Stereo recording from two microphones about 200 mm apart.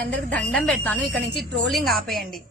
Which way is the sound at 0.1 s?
5° left (ahead or behind).